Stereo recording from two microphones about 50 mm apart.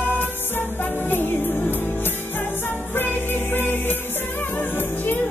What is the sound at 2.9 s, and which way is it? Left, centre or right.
Music, left.